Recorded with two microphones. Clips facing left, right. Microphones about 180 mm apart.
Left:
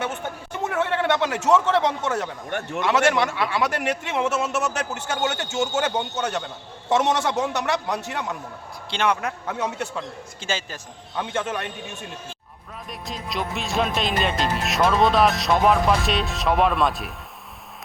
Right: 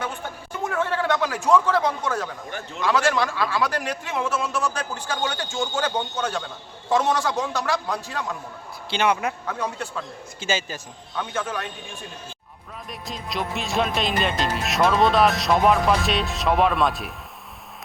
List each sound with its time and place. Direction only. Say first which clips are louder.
0.0 s a sound: left 2 dB; 25° left (ahead or behind)
2.5 s a man's voice: left 6 dB; 70° left (ahead or behind)
2.8 s speech: left 1 dB; 20° left (ahead or behind)
8.9 s speech: right 1 dB; 5° right (ahead or behind)
9.5 s speech: left 2 dB; 20° left (ahead or behind)
10.4 s speech: right 3 dB; 5° right (ahead or behind)
11.2 s speech: left 2 dB; 25° left (ahead or behind)
12.9 s speech: left 1 dB; centre (ahead or behind)